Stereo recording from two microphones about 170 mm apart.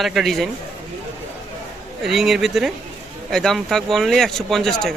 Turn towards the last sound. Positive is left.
turn(degrees=0)  # may be behind; listen again after turning